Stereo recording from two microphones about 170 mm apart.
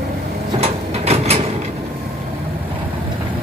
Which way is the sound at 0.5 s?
35° right (ahead or behind).